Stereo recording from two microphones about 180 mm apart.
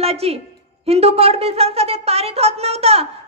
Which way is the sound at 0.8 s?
35° right (ahead or behind).